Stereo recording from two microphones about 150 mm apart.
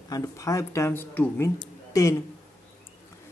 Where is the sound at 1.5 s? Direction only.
20° left (ahead or behind).